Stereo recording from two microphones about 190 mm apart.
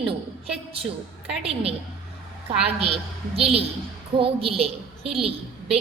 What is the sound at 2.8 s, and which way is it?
A woman's voice, 30° right (ahead or behind).